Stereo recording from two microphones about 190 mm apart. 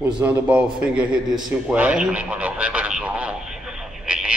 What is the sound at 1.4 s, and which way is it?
Radio, 5° right (ahead or behind).